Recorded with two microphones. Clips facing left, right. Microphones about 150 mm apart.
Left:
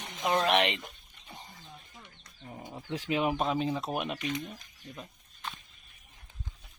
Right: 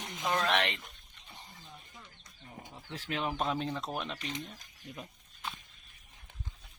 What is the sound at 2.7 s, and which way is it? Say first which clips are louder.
Speech: left 7 dB; 15° left (ahead or behind).